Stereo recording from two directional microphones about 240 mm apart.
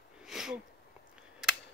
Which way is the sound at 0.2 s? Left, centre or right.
Centre.